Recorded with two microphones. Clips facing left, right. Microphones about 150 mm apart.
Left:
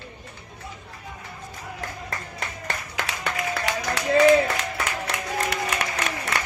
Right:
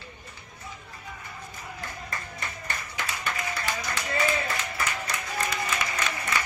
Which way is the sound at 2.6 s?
80° left.